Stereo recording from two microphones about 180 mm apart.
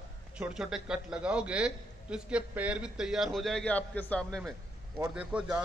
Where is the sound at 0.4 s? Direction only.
5° right (ahead or behind).